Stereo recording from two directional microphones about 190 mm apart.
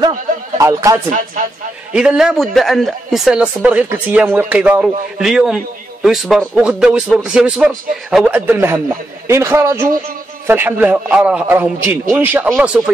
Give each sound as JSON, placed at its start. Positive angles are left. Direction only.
{"t": 0.6, "sound": "a man's voice", "side_deg": -15}
{"t": 1.1, "sound": "speech", "side_deg": -45}
{"t": 2.0, "sound": "a man's voice", "side_deg": -5}